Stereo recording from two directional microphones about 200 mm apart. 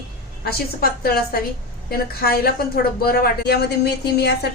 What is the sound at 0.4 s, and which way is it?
A woman's voice, 50° left (ahead or behind).